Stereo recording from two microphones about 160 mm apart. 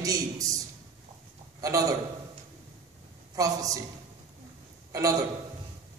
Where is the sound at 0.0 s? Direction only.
20° right (ahead or behind).